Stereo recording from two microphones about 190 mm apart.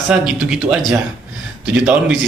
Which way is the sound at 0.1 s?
5° right (ahead or behind).